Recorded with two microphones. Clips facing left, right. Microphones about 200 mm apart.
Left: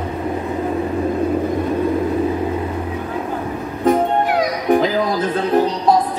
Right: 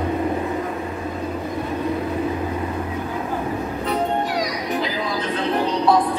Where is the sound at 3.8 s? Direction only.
50° left (ahead or behind).